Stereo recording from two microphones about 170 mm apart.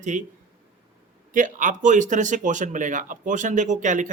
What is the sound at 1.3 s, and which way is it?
Speech, 50° right (ahead or behind).